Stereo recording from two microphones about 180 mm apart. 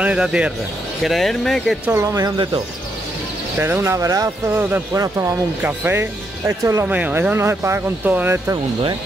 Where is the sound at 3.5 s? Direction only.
10° right (ahead or behind).